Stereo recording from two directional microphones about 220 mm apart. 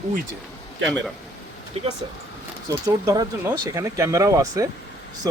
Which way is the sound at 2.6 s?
15° right (ahead or behind).